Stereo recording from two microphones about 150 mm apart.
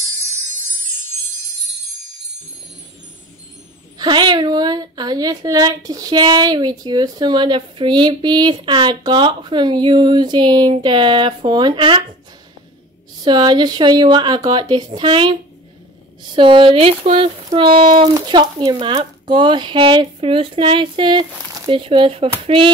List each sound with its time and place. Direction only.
4.0 s a woman's voice: 30° right (ahead or behind)
13.2 s a woman's voice: 30° right (ahead or behind)
14.9 s a sound: 35° right (ahead or behind)